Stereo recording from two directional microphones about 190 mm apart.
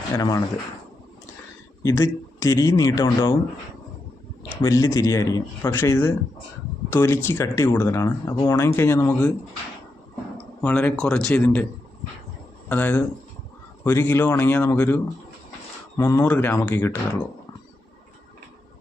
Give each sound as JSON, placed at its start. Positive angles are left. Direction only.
{"t": 0.1, "sound": "speech", "side_deg": 20}
{"t": 1.8, "sound": "speech", "side_deg": 15}
{"t": 4.6, "sound": "speech", "side_deg": 15}
{"t": 10.6, "sound": "speech", "side_deg": 10}
{"t": 12.6, "sound": "speech", "side_deg": 10}